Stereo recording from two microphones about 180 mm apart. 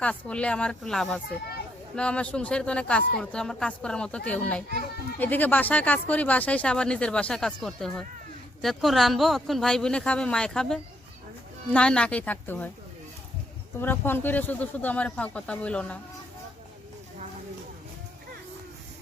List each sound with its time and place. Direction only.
0.0 s speech: 5° left (ahead or behind)
13.7 s speech: 10° left (ahead or behind)